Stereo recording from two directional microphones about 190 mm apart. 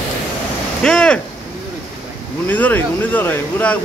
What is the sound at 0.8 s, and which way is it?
Speech, 5° left (ahead or behind).